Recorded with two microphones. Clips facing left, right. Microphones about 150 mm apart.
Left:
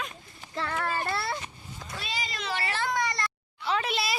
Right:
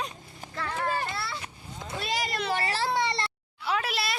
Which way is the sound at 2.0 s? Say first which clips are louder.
Right 6 dB; 70° right (ahead or behind).